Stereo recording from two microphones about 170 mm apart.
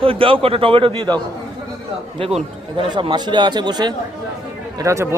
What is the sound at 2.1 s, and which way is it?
Speech, 35° right (ahead or behind).